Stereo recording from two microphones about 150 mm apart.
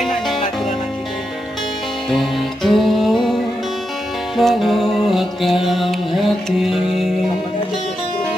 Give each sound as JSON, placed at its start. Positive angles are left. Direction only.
{"t": 2.0, "sound": "music", "side_deg": 0}
{"t": 4.4, "sound": "music", "side_deg": 0}